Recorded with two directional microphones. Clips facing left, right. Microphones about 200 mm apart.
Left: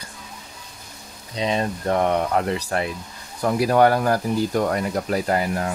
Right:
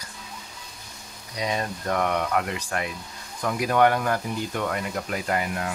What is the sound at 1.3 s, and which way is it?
Speech, 25° left (ahead or behind).